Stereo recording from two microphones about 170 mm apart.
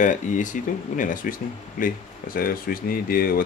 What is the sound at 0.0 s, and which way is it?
Speech, 50° left (ahead or behind).